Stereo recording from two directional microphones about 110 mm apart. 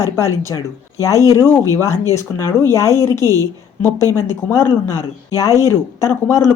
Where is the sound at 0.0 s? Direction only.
25° left (ahead or behind).